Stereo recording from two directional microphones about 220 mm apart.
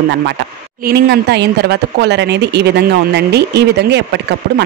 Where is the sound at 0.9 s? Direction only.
50° right (ahead or behind).